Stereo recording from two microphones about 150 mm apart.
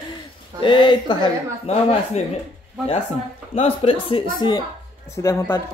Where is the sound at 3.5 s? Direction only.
40° left (ahead or behind).